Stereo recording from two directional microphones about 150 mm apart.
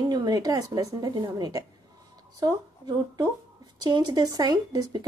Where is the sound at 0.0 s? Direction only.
25° right (ahead or behind).